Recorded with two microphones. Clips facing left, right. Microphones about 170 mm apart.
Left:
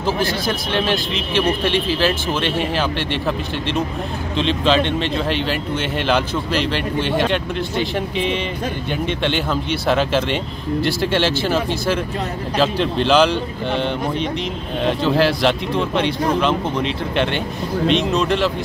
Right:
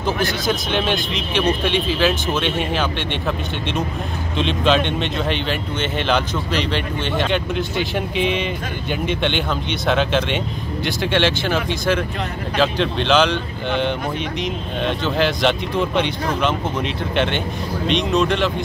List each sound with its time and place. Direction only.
0.0 s speech: 30° left (ahead or behind)
0.5 s speech: centre (ahead or behind)
4.4 s speech: centre (ahead or behind)